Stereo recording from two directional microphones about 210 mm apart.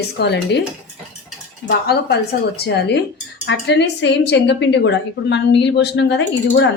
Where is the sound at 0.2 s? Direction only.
55° left (ahead or behind).